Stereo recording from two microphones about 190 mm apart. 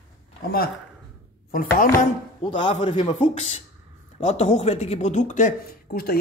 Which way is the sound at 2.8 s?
35° left (ahead or behind).